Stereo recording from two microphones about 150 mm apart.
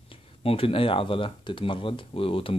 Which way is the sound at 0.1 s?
40° left (ahead or behind).